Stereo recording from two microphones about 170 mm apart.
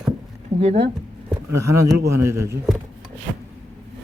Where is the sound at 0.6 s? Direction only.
40° right (ahead or behind).